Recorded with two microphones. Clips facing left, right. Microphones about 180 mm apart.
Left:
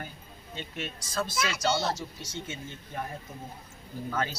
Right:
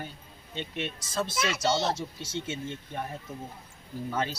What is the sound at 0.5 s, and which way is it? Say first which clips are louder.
Speech: right 3 dB; 25° right (ahead or behind).